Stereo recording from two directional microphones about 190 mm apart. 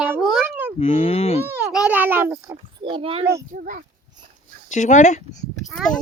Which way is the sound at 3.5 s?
45° right (ahead or behind).